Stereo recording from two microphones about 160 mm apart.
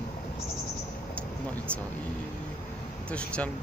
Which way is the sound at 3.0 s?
5° left (ahead or behind).